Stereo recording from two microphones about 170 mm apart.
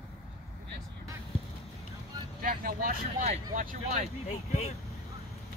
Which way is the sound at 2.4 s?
55° right (ahead or behind).